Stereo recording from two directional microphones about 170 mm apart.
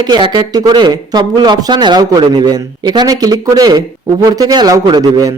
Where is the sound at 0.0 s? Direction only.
25° right (ahead or behind).